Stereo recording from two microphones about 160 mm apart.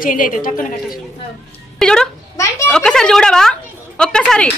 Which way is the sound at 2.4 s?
20° left (ahead or behind).